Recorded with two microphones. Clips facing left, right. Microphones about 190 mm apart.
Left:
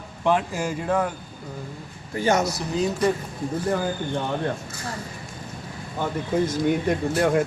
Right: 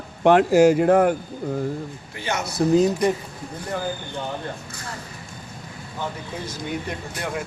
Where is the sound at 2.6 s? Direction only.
45° right (ahead or behind).